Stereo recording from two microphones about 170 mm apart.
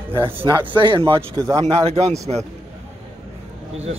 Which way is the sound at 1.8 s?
35° right (ahead or behind).